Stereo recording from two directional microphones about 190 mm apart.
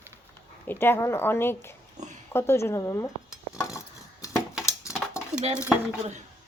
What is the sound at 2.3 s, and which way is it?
Speech, 15° left (ahead or behind).